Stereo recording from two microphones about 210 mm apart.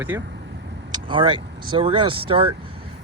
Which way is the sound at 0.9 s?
25° right (ahead or behind).